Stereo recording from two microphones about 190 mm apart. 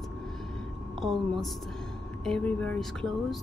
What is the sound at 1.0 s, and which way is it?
Speech, centre (ahead or behind).